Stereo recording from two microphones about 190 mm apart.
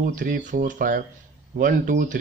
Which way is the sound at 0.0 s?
45° right (ahead or behind).